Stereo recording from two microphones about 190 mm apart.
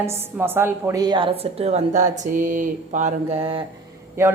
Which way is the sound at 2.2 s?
45° right (ahead or behind).